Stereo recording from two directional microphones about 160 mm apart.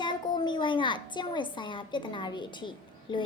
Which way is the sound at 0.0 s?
30° left (ahead or behind).